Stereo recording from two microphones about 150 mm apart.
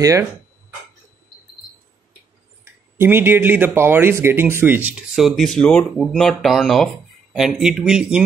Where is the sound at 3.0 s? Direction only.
15° right (ahead or behind).